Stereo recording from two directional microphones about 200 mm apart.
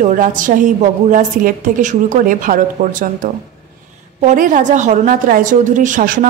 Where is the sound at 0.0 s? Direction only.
40° right (ahead or behind).